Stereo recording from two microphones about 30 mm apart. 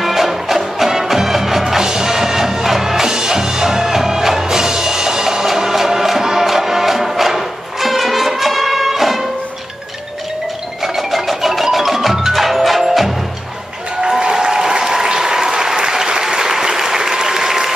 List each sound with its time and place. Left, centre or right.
0.0 s music: centre
1.8 s music: right
10.8 s music: centre
14.0 s applause: right